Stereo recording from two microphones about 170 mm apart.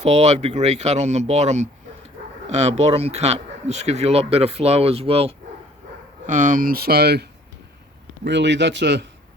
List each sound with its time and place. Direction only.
0.0 s speech: 40° right (ahead or behind)
6.2 s speech: 50° right (ahead or behind); by 7.3 s 70° right (ahead or behind)
8.2 s speech: 90° right